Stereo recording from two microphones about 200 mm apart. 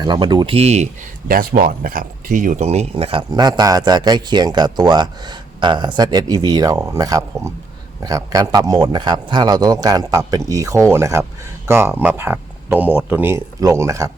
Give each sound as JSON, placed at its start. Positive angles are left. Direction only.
{"t": 0.0, "sound": "speech", "side_deg": -20}
{"t": 1.3, "sound": "a man's voice", "side_deg": -45}